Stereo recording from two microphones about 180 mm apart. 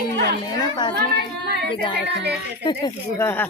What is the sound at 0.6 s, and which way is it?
Speech, 25° left (ahead or behind).